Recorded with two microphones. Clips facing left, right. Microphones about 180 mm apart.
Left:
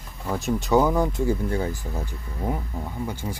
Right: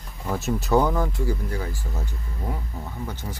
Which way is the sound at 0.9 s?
20° left (ahead or behind).